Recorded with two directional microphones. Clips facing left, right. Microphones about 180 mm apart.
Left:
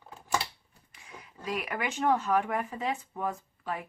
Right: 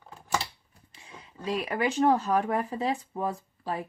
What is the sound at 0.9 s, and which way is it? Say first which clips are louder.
Speech: even; 25° right (ahead or behind).